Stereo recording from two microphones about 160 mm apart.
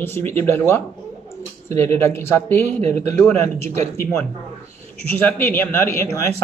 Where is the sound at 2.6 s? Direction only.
45° right (ahead or behind).